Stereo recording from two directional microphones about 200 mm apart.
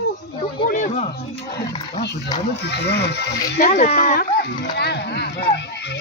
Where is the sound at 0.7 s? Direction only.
40° left (ahead or behind).